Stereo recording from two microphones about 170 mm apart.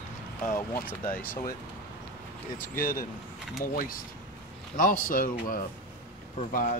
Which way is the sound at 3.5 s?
55° left (ahead or behind).